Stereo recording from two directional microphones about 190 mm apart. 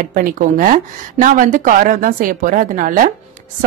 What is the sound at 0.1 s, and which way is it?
Speech, 45° right (ahead or behind).